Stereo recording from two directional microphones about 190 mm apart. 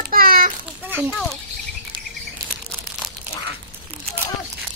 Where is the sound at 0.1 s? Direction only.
50° right (ahead or behind).